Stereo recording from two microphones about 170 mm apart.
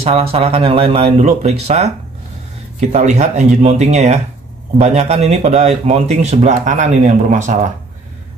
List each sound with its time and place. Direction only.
0.0 s speech: 35° right (ahead or behind)